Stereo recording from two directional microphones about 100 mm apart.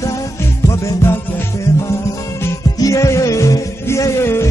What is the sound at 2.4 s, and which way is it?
Music, 35° left (ahead or behind).